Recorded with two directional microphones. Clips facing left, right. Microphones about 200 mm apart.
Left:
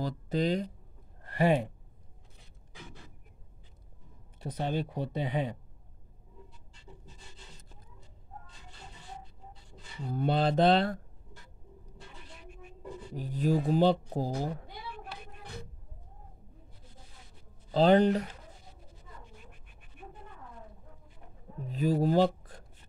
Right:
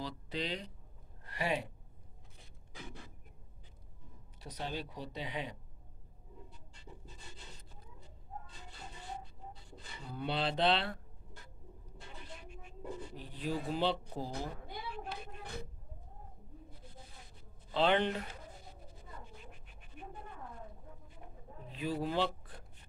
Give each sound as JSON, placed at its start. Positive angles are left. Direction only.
{"t": 0.0, "sound": "speech", "side_deg": 45}
{"t": 4.4, "sound": "speech", "side_deg": 50}
{"t": 10.0, "sound": "speech", "side_deg": 45}
{"t": 13.1, "sound": "speech", "side_deg": 45}
{"t": 17.6, "sound": "speech", "side_deg": 40}
{"t": 21.6, "sound": "speech", "side_deg": 40}